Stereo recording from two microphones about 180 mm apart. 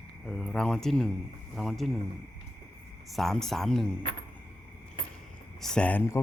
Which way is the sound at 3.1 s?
Centre (ahead or behind).